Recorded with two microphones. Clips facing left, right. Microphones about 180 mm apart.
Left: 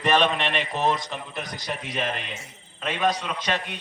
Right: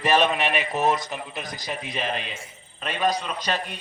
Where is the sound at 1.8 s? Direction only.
75° left (ahead or behind).